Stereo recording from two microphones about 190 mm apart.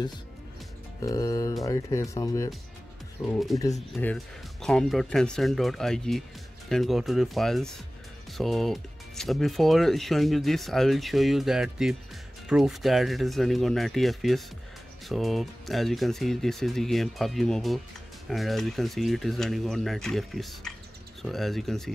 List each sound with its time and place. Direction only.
1.0 s speech: 15° left (ahead or behind)
3.3 s speech: centre (ahead or behind)